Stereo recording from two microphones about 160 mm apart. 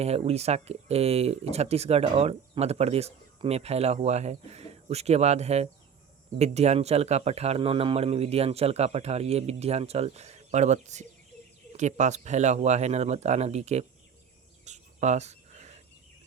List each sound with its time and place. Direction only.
0.0 s speech: 40° right (ahead or behind)
14.6 s cricket: 45° right (ahead or behind)